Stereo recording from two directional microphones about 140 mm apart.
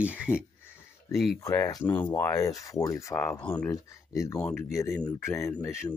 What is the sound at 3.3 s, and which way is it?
Speech, 10° left (ahead or behind).